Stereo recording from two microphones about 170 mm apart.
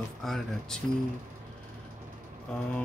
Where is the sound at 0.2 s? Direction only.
Centre (ahead or behind).